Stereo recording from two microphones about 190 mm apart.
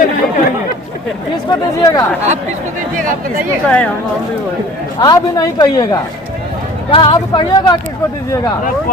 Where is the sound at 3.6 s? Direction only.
5° left (ahead or behind).